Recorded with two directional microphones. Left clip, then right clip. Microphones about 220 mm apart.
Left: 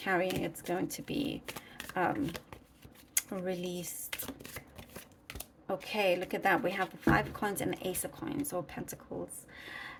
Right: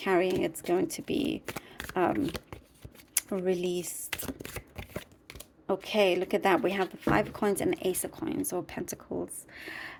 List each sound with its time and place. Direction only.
0.0 s speech: 30° right (ahead or behind)
3.2 s shuffling cards: 25° right (ahead or behind)
5.6 s speech: 30° right (ahead or behind)
9.5 s a sound: 35° right (ahead or behind)